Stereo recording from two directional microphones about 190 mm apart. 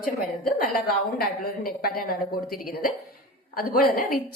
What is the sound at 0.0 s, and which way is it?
A woman's voice, 45° left (ahead or behind).